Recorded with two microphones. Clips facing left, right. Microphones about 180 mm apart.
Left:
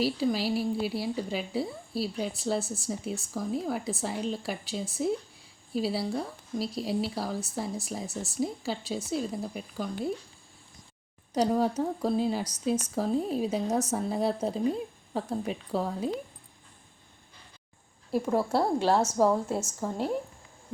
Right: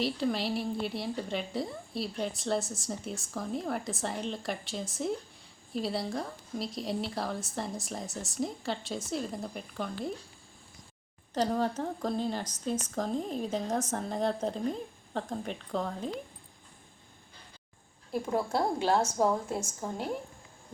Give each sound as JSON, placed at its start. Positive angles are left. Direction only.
{"t": 0.0, "sound": "a woman's voice", "side_deg": 0}
{"t": 11.3, "sound": "speech", "side_deg": 10}
{"t": 18.1, "sound": "a woman's voice", "side_deg": 35}